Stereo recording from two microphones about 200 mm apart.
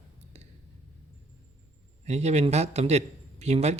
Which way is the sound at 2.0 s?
35° right (ahead or behind).